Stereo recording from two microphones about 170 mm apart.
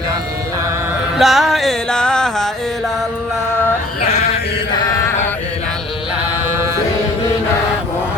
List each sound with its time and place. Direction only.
1.2 s music: centre (ahead or behind)
4.0 s a sound: 40° left (ahead or behind)
4.7 s chant: 25° left (ahead or behind)